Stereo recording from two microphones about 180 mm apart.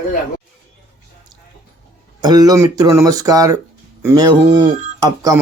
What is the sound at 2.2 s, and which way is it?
Speech, 20° right (ahead or behind).